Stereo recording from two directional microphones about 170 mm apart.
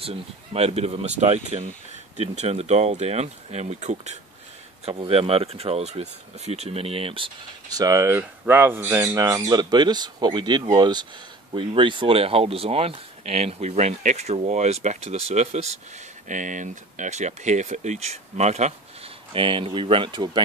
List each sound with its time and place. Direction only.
0.0 s speech: 35° right (ahead or behind)
7.7 s speech: 20° right (ahead or behind); by 18.7 s 40° right (ahead or behind)
19.3 s speech: 30° right (ahead or behind)